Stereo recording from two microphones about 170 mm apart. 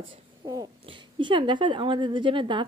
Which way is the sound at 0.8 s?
30° right (ahead or behind).